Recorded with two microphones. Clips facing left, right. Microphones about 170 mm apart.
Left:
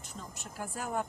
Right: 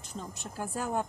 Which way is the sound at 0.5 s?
25° right (ahead or behind).